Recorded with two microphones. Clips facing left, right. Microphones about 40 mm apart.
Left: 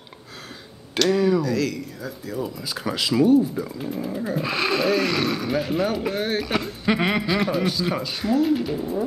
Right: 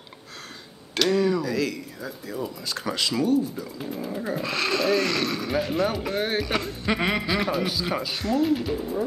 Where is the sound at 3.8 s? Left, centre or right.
Centre.